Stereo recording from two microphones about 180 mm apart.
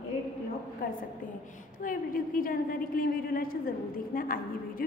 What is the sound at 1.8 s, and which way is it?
A woman's voice, 50° left (ahead or behind).